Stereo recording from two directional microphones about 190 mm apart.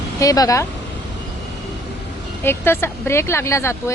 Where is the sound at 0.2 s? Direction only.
20° left (ahead or behind).